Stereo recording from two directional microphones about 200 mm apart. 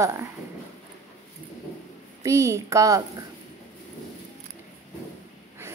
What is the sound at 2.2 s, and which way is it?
Speech, 15° right (ahead or behind).